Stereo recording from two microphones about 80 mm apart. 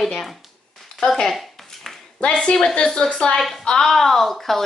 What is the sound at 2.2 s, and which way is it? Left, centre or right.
A woman's voice, centre.